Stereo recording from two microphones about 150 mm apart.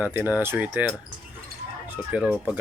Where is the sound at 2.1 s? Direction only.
5° right (ahead or behind).